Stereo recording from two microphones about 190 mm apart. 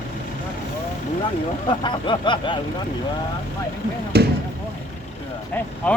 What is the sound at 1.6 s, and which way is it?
Speech, 25° left (ahead or behind).